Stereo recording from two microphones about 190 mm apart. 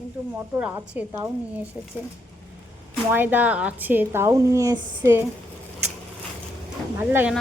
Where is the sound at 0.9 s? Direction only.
10° right (ahead or behind).